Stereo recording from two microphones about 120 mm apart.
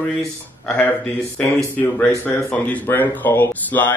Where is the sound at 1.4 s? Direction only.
10° left (ahead or behind).